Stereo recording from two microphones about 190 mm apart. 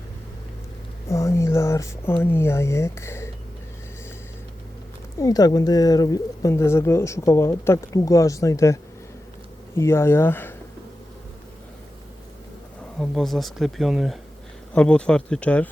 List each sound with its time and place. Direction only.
1.0 s speech: 15° left (ahead or behind)
5.2 s speech: 20° left (ahead or behind)
13.0 s speech: centre (ahead or behind)